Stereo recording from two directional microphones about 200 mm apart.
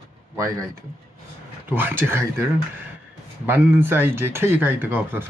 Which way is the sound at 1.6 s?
10° right (ahead or behind).